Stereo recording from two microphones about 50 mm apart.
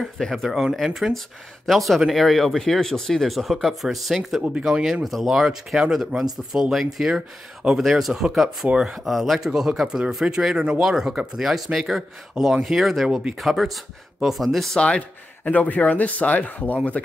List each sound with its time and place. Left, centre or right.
0.0 s speech: centre
0.6 s speech: centre
4.4 s speech: centre
5.0 s speech: centre
9.0 s speech: centre
9.5 s speech: centre
14.8 s a man's voice: centre
15.4 s speech: left